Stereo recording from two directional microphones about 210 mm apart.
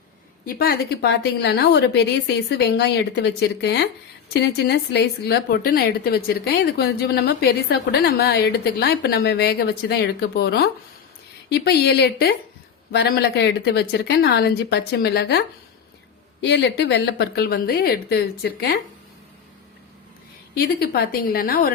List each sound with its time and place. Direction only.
0.4 s a woman's voice: 50° left (ahead or behind)
20.6 s a woman's voice: 50° left (ahead or behind)